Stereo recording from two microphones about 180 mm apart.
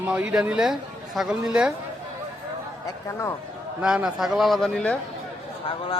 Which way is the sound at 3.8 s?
5° right (ahead or behind).